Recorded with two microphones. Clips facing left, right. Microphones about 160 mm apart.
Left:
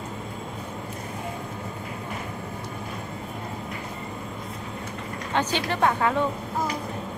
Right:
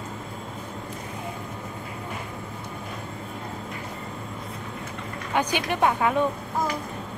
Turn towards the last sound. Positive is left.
turn(degrees=-15)  # may be behind; listen again after turning